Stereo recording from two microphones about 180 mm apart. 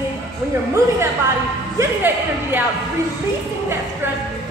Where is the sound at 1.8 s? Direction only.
10° right (ahead or behind).